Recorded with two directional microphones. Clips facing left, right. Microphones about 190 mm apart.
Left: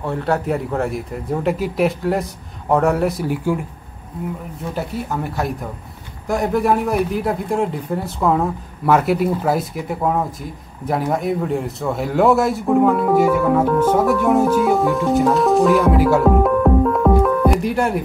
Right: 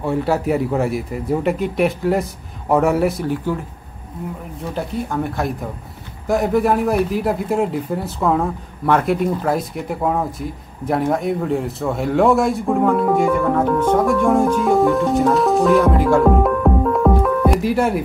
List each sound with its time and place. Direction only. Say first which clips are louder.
0.0 s a man's voice: right 2 dB; 10° right (ahead or behind)
3.3 s speech: left 1 dB; 10° left (ahead or behind)
4.7 s a man's voice: right 2 dB; 5° left (ahead or behind)
17.2 s music: left 1 dB; centre (ahead or behind)